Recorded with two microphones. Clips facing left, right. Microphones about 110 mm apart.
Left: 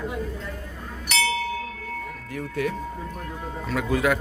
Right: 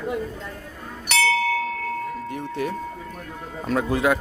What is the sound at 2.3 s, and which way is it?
A man's voice, 25° right (ahead or behind).